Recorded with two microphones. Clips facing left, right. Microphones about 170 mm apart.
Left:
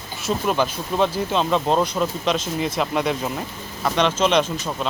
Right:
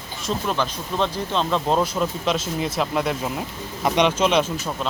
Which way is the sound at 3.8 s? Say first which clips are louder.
Right 1 dB; 15° right (ahead or behind).